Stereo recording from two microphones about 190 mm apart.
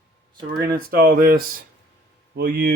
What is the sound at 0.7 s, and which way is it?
Speech, 50° right (ahead or behind).